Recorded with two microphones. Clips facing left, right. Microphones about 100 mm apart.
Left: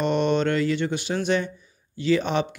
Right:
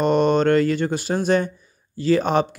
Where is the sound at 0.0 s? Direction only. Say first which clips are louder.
Right 5 dB; 45° right (ahead or behind).